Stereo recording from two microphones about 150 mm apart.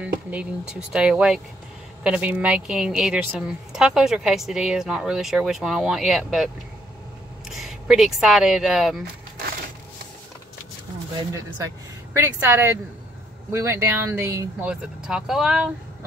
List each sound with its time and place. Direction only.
0.9 s a woman's voice: 5° right (ahead or behind)
7.5 s speech: centre (ahead or behind)
11.3 s speech: 20° right (ahead or behind)
14.7 s a woman's voice: 5° right (ahead or behind)